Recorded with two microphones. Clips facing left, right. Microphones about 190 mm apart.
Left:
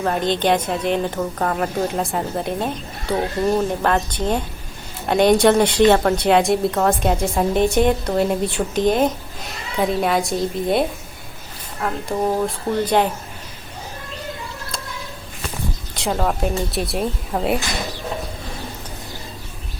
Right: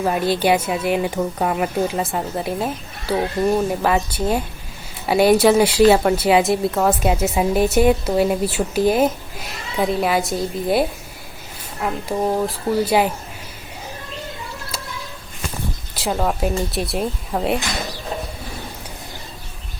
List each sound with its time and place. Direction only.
0.0 s a woman's voice: 5° right (ahead or behind)
16.0 s a woman's voice: 5° right (ahead or behind)